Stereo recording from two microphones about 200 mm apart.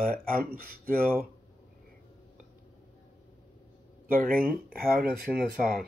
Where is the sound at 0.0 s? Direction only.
45° right (ahead or behind).